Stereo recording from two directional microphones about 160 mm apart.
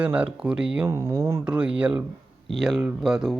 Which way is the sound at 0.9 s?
20° right (ahead or behind).